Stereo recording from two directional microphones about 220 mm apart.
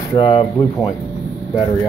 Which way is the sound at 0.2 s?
25° left (ahead or behind).